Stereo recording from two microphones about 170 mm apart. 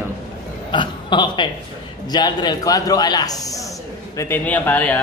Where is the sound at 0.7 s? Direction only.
25° left (ahead or behind).